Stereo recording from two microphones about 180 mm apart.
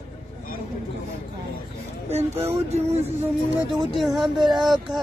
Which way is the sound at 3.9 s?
Centre (ahead or behind).